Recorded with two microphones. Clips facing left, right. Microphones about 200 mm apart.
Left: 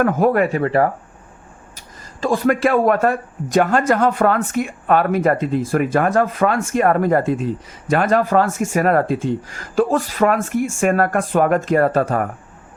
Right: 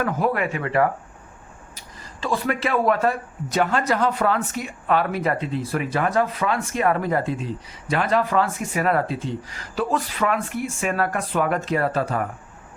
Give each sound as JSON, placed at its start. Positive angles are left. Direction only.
{"t": 0.0, "sound": "speech", "side_deg": 50}
{"t": 2.2, "sound": "speech", "side_deg": 45}